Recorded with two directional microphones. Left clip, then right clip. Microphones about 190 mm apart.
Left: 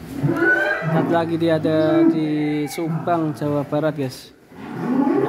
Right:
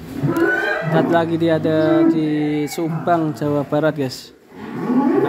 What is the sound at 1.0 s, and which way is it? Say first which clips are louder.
Speech: even; centre (ahead or behind).